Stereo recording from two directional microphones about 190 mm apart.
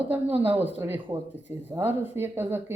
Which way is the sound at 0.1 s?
10° right (ahead or behind).